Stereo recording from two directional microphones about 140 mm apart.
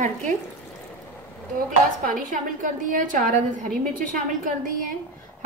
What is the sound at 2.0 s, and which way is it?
A woman's voice, 70° right (ahead or behind).